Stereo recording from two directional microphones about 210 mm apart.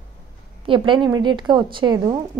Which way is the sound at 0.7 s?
25° right (ahead or behind).